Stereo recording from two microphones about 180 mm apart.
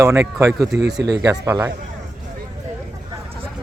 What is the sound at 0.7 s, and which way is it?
Speech, 70° right (ahead or behind).